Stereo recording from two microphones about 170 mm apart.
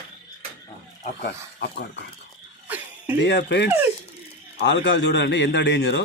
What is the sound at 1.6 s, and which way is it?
Speech, 75° left (ahead or behind).